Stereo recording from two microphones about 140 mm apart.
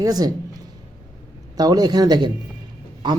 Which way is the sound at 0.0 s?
25° right (ahead or behind).